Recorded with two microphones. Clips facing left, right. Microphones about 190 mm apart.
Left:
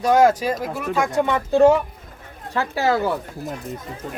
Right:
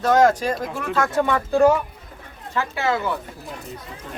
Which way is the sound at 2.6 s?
35° left (ahead or behind).